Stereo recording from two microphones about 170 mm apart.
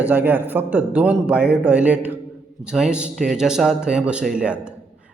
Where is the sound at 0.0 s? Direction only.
10° right (ahead or behind).